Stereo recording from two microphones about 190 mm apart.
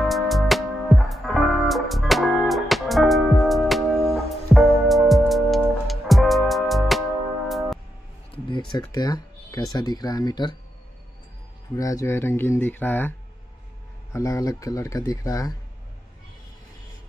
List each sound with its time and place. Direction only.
0.1 s music: centre (ahead or behind)
8.5 s speech: 25° left (ahead or behind)
11.7 s speech: 15° left (ahead or behind)
14.1 s speech: 15° left (ahead or behind)